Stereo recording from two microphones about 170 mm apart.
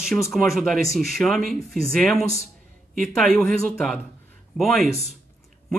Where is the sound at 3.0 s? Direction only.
Centre (ahead or behind).